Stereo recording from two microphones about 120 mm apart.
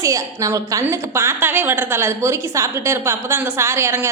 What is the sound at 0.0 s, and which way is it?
A woman's voice, 25° right (ahead or behind).